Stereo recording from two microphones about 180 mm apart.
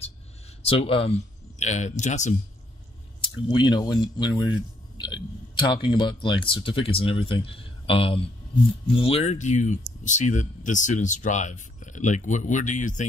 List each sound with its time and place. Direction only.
0.7 s speech: 30° left (ahead or behind)
3.4 s speech: 25° left (ahead or behind); by 13.0 s 45° left (ahead or behind)